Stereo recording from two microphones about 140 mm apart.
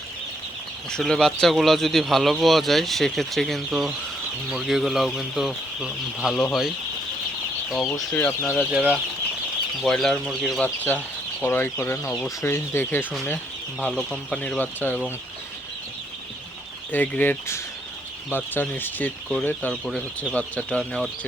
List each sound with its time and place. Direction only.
0.9 s speech: 5° left (ahead or behind)
7.9 s speech: 15° left (ahead or behind)
8.7 s speech: 10° right (ahead or behind)
9.8 s speech: 5° left (ahead or behind)
10.8 s speech: 10° left (ahead or behind)
16.9 s speech: 15° left (ahead or behind)
19.7 s speech: centre (ahead or behind)